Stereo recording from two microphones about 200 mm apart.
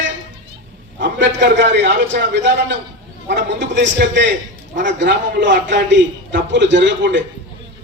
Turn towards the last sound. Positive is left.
turn(degrees=-60)  # may be behind; listen again after turning